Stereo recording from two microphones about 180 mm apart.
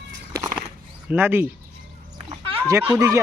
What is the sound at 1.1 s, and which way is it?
Speech, 10° right (ahead or behind).